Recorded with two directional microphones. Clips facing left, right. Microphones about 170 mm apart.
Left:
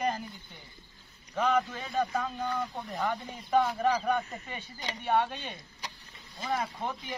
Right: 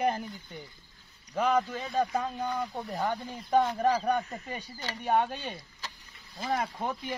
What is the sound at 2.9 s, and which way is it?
A man's voice, 35° right (ahead or behind).